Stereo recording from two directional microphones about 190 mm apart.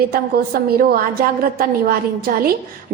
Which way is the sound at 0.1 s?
50° right (ahead or behind).